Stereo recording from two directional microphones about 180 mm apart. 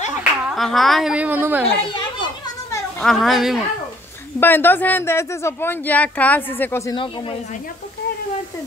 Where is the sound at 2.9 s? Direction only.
Centre (ahead or behind).